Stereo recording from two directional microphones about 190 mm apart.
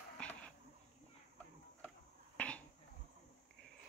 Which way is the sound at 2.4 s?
5° left (ahead or behind).